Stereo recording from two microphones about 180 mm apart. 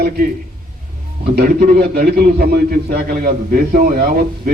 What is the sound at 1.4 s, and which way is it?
A man's voice, 55° right (ahead or behind).